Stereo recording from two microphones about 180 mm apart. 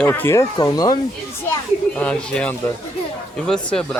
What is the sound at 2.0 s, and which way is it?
Speech, 5° left (ahead or behind).